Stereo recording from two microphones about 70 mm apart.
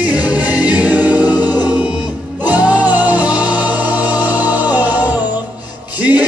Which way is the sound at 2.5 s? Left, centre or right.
Right.